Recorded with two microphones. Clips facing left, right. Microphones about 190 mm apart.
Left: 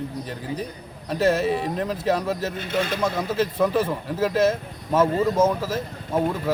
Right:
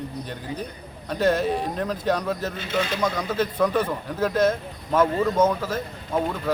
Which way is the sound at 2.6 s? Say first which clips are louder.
Left 1 dB; 55° left (ahead or behind).